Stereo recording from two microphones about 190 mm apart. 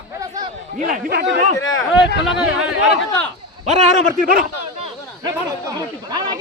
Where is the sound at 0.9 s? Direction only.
50° right (ahead or behind).